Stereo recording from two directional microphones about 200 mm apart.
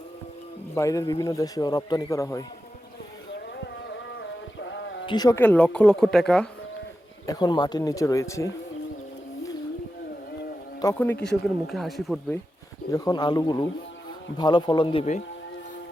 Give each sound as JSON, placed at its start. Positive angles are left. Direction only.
{"t": 0.7, "sound": "speech", "side_deg": 15}
{"t": 3.3, "sound": "a sound", "side_deg": 60}
{"t": 5.0, "sound": "speech", "side_deg": 20}
{"t": 7.3, "sound": "speech", "side_deg": 20}
{"t": 10.8, "sound": "speech", "side_deg": 15}
{"t": 12.9, "sound": "speech", "side_deg": 20}